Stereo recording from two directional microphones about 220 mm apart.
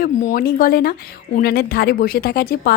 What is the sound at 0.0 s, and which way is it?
Speech, 40° left (ahead or behind).